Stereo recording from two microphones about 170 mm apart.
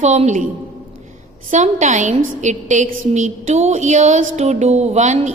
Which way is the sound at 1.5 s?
45° right (ahead or behind).